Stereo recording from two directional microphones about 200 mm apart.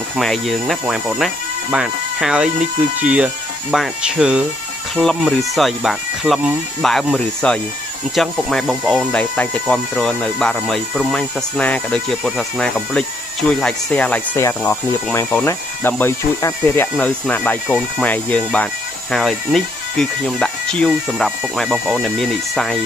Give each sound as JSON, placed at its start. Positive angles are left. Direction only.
{"t": 0.1, "sound": "speech", "side_deg": 0}
{"t": 17.6, "sound": "speech", "side_deg": -5}